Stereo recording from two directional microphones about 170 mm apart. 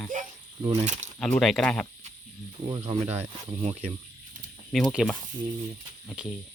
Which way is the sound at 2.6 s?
35° right (ahead or behind).